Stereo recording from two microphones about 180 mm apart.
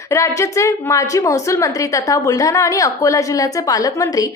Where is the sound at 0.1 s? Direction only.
15° left (ahead or behind).